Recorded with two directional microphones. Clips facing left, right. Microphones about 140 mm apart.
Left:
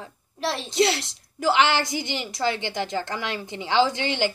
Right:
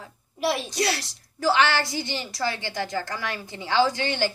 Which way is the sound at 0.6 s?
20° left (ahead or behind).